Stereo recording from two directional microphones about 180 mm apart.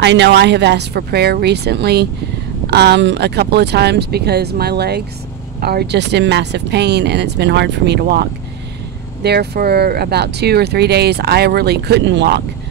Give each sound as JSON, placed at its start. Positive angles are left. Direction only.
{"t": 0.0, "sound": "speech", "side_deg": -75}